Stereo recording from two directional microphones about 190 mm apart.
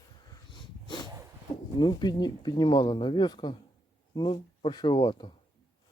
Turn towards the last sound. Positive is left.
turn(degrees=25)  # may be behind; listen again after turning